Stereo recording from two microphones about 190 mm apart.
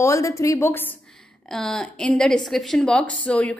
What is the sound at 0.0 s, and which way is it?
A woman's voice, 15° left (ahead or behind).